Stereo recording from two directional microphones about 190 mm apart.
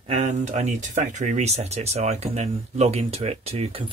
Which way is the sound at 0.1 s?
35° right (ahead or behind).